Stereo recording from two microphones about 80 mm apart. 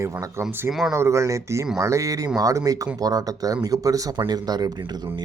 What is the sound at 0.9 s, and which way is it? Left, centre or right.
Speech, right.